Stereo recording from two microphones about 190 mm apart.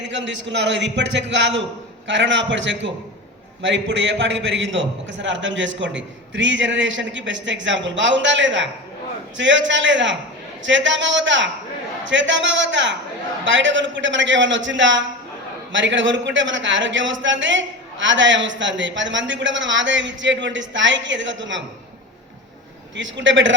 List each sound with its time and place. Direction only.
0.1 s a man's voice: 70° right (ahead or behind)
23.0 s a man's voice: 75° right (ahead or behind)